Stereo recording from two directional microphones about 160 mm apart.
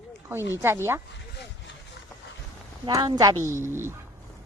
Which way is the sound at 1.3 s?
90° left.